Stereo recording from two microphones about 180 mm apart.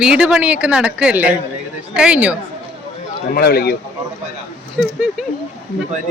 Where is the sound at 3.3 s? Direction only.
60° left (ahead or behind).